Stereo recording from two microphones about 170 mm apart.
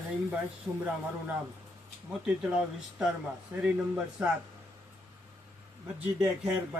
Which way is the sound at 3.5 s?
10° right (ahead or behind).